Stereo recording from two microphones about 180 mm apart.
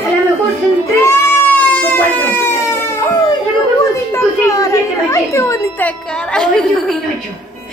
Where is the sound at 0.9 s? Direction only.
15° left (ahead or behind).